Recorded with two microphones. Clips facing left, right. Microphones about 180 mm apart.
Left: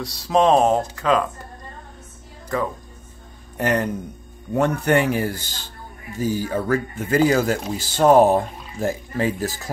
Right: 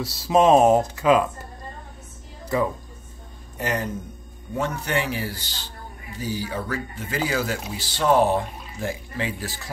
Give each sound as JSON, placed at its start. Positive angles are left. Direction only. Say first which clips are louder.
{"t": 0.0, "sound": "speech", "louder": "even", "side_deg": -5}
{"t": 3.5, "sound": "a man's voice", "louder": "left 5 dB", "side_deg": 60}